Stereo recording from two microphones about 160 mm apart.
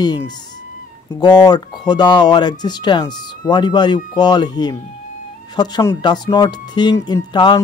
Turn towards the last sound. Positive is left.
turn(degrees=25)  # may be behind; listen again after turning